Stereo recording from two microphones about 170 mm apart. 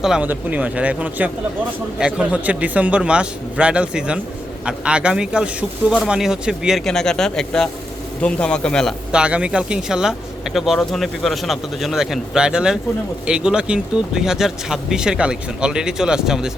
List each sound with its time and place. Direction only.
0.0 s a man's voice: 5° right (ahead or behind)